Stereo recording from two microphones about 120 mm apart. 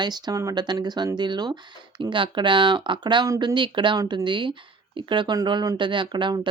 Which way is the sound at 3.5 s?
40° right (ahead or behind).